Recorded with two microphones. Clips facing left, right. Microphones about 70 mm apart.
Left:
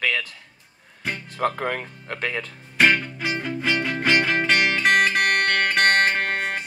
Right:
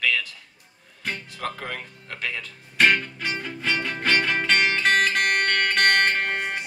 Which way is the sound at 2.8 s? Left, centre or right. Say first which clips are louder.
Left 1 dB; centre.